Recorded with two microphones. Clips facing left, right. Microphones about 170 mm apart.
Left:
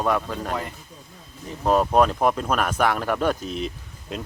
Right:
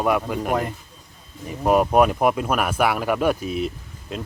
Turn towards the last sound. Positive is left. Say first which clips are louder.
# right 1 dB
turn(degrees=0)  # may be behind; listen again after turning